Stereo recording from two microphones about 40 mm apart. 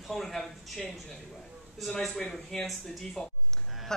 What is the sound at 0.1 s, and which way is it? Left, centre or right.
Speech, centre.